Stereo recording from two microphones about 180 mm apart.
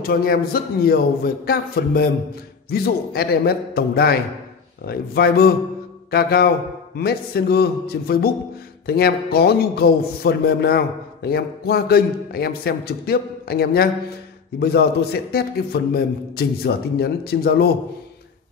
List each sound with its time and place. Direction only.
0.0 s a man's voice: 55° left (ahead or behind)